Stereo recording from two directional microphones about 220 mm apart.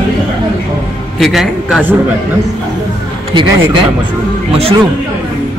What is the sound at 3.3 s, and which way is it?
Speech, 20° right (ahead or behind).